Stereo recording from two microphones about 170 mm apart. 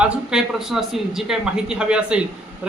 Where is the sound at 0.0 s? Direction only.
5° right (ahead or behind).